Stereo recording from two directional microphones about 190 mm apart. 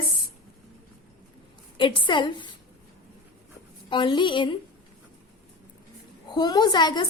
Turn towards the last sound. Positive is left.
turn(degrees=25)  # may be behind; listen again after turning